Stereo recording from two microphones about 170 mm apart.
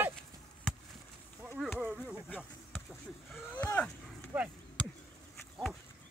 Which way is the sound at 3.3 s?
10° left (ahead or behind).